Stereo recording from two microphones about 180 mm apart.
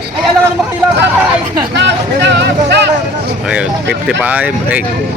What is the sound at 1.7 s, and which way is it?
Speech, 75° right (ahead or behind).